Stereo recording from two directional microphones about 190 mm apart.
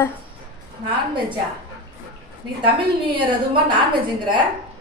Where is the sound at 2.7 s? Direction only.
25° right (ahead or behind).